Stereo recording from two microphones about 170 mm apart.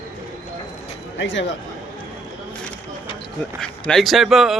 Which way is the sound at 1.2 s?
90° left.